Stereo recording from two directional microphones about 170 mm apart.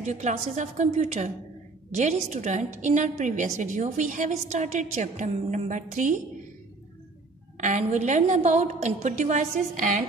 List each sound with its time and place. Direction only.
0.0 s a woman's voice: 45° right (ahead or behind)
7.6 s a woman's voice: 45° right (ahead or behind)